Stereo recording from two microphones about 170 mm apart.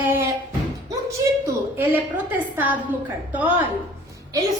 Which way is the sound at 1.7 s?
10° right (ahead or behind).